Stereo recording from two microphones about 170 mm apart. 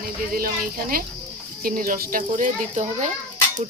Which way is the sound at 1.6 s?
55° right (ahead or behind).